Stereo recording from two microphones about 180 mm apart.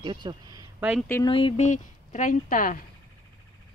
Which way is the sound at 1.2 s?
30° left (ahead or behind).